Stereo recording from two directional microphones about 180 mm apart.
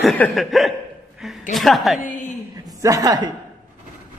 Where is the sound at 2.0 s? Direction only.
45° left (ahead or behind).